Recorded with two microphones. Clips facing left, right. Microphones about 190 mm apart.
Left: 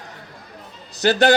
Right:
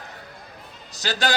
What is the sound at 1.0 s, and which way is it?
Speech, 60° left (ahead or behind).